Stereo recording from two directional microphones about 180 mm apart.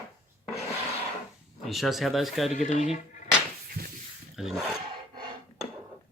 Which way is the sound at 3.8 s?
55° right (ahead or behind).